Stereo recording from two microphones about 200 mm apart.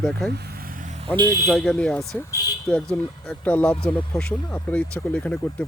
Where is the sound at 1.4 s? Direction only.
Centre (ahead or behind).